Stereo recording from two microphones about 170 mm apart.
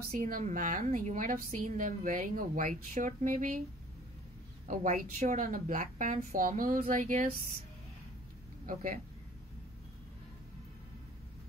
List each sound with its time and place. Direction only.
0.1 s a woman's voice: 55° right (ahead or behind)
4.6 s a woman's voice: 50° right (ahead or behind)
8.6 s a woman's voice: 50° right (ahead or behind)